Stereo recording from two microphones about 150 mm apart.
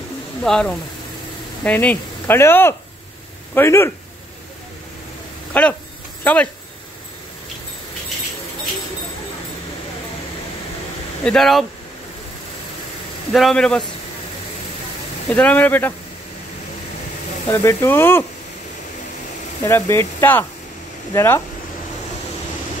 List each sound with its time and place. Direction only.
0.4 s speech: 5° left (ahead or behind)
5.5 s speech: 10° left (ahead or behind)
11.2 s speech: centre (ahead or behind)
13.3 s speech: centre (ahead or behind)
15.3 s speech: 10° left (ahead or behind)
17.5 s speech: 15° left (ahead or behind)
19.6 s speech: 20° left (ahead or behind)